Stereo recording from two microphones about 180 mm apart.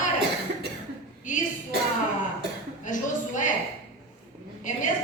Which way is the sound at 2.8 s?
45° left (ahead or behind).